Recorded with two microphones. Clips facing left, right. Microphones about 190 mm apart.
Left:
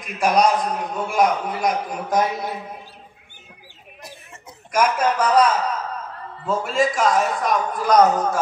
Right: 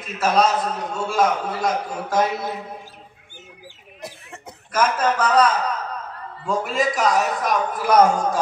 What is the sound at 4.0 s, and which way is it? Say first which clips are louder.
Cough: right 4 dB; 70° right (ahead or behind).